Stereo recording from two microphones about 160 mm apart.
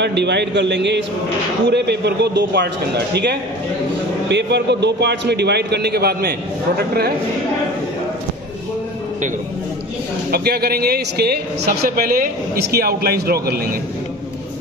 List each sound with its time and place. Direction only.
0.0 s a man's voice: 90° right
4.3 s a man's voice: 90° right
10.3 s a man's voice: 75° right (ahead or behind)